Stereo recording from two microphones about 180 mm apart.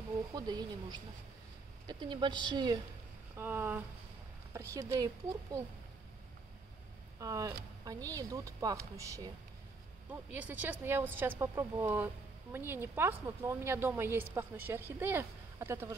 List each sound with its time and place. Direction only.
0.3 s speech: 20° right (ahead or behind)
3.3 s speech: 10° right (ahead or behind)
7.2 s speech: 15° right (ahead or behind)
10.3 s speech: 10° right (ahead or behind)